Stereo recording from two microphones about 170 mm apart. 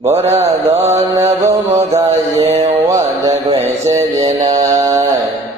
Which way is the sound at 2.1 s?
35° right (ahead or behind).